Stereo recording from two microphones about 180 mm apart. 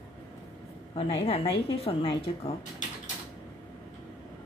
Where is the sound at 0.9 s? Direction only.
35° left (ahead or behind).